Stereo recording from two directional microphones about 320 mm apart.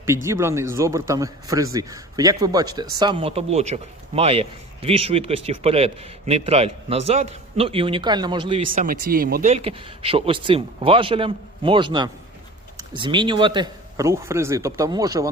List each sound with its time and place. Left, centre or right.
0.0 s a man's voice: centre
8.7 s a man's voice: right; by 15.3 s centre